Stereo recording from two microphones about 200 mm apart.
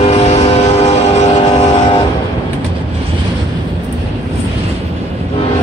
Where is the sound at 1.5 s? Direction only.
30° left (ahead or behind).